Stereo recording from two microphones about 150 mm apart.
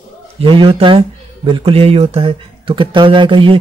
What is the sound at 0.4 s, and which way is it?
Speech, 35° right (ahead or behind).